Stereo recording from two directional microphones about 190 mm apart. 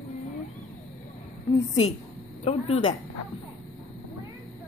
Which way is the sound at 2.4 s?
35° left (ahead or behind).